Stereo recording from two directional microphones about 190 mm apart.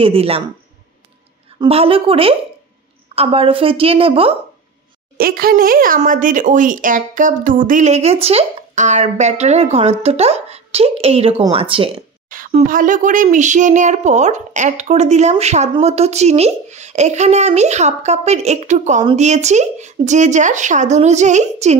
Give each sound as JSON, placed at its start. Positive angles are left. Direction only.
{"t": 0.0, "sound": "speech", "side_deg": -30}
{"t": 1.6, "sound": "a woman's voice", "side_deg": -30}
{"t": 5.1, "sound": "a woman's voice", "side_deg": -50}
{"t": 12.3, "sound": "speech", "side_deg": -45}